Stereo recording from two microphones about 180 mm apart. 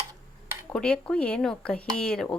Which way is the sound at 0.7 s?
5° left (ahead or behind).